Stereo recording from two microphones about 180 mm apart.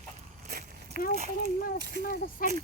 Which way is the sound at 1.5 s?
50° left (ahead or behind).